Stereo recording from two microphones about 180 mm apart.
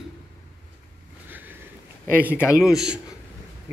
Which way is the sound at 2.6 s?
5° right (ahead or behind).